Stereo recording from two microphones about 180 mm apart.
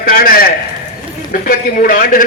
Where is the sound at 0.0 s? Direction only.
50° left (ahead or behind).